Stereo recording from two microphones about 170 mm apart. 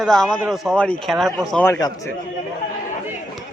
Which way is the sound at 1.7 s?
20° left (ahead or behind).